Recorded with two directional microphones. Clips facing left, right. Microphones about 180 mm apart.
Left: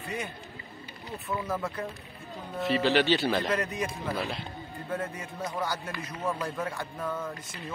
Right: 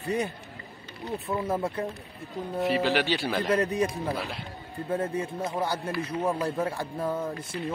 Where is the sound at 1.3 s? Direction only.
30° right (ahead or behind).